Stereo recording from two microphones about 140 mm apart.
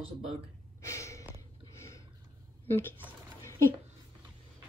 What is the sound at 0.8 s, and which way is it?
Gasp, 20° left (ahead or behind).